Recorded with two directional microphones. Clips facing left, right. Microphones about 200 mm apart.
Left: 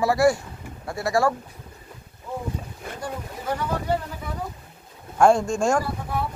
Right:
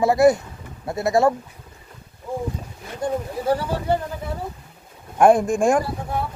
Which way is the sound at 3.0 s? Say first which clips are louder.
Right 9 dB; 30° right (ahead or behind).